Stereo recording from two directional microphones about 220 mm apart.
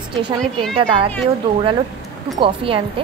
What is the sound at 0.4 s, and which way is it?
Speech, 5° left (ahead or behind).